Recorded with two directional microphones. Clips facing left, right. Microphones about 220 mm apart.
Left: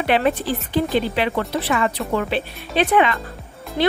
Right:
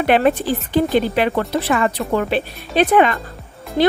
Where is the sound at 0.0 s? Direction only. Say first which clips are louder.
Right 4 dB; 50° right (ahead or behind).